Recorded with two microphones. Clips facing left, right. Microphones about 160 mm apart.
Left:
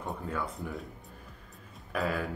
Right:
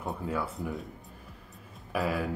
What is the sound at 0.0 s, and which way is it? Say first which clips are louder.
Speech: right 2 dB; centre (ahead or behind).